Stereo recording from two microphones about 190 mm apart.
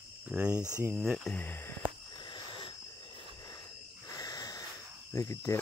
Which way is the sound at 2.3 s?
25° left (ahead or behind).